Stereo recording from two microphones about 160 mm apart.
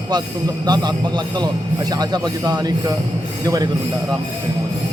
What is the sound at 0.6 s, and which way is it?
Speech, 25° right (ahead or behind).